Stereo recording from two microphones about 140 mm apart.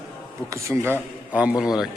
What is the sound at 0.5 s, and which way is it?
Speech, 20° right (ahead or behind).